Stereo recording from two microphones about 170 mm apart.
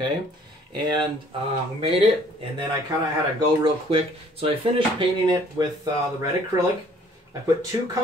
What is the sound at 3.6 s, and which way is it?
Speech, 30° right (ahead or behind).